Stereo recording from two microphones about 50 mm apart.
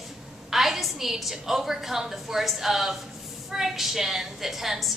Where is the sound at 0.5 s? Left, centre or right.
Centre.